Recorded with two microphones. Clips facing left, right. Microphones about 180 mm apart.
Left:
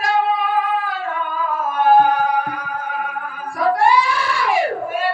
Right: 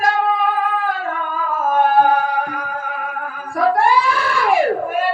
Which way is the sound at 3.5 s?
50° right (ahead or behind).